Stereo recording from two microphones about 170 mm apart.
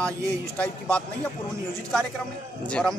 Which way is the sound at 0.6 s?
5° left (ahead or behind).